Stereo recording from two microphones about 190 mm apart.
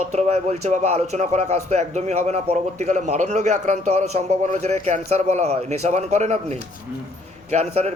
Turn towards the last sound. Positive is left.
turn(degrees=-35)  # may be behind; listen again after turning